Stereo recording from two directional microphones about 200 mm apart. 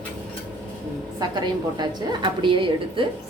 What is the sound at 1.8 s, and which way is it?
A woman's voice, 25° right (ahead or behind).